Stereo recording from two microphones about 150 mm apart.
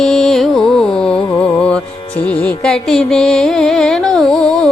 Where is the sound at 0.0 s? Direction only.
Centre (ahead or behind).